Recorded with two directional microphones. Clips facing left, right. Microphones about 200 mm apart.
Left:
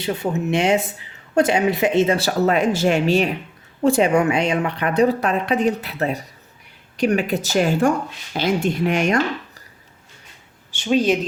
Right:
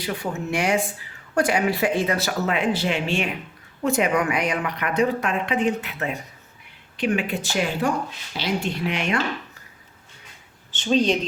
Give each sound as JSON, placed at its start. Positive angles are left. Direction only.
{"t": 0.0, "sound": "speech", "side_deg": 25}
{"t": 10.7, "sound": "speech", "side_deg": 10}